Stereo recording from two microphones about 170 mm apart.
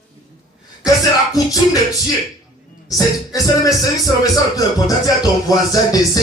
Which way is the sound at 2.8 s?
20° left (ahead or behind).